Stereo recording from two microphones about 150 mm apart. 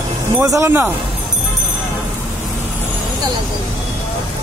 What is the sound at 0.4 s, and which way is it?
Speech, 20° right (ahead or behind).